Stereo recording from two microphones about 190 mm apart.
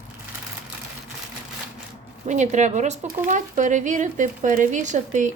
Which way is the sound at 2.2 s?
40° right (ahead or behind).